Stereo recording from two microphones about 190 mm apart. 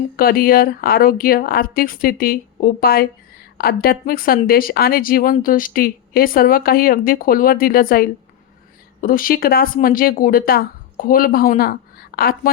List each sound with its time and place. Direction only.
0.2 s speech: 50° left (ahead or behind)